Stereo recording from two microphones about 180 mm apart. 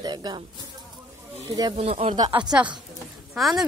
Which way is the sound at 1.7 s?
35° right (ahead or behind).